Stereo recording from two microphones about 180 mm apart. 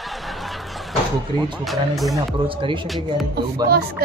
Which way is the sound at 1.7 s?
Centre (ahead or behind).